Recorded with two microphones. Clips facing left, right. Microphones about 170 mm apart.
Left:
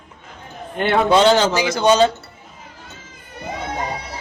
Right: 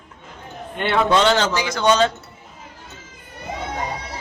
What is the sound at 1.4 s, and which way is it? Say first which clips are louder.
Speech: left 3 dB; 5° left (ahead or behind).